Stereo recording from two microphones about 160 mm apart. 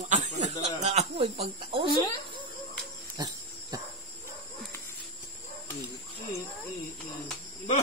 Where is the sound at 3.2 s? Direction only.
25° right (ahead or behind).